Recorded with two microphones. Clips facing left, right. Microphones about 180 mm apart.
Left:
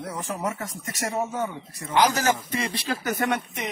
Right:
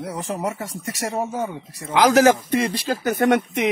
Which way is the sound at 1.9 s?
90° right.